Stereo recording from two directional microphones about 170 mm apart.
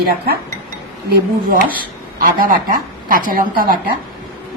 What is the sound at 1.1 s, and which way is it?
A woman's voice, 55° right (ahead or behind).